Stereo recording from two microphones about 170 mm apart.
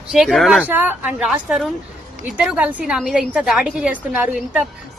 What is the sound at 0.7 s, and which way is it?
A woman's voice, 10° right (ahead or behind).